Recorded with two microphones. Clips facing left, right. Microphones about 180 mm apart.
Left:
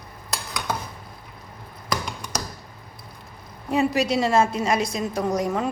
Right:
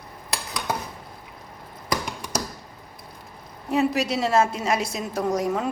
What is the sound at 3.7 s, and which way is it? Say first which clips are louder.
A woman's voice: left 1 dB; centre (ahead or behind).